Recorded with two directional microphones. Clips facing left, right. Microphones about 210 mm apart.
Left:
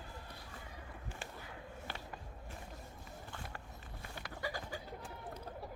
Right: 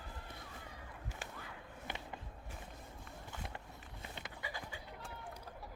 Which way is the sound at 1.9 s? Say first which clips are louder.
Right 3 dB; 20° right (ahead or behind).